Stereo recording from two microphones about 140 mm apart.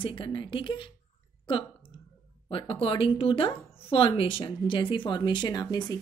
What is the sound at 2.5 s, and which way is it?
Speech, 40° left (ahead or behind).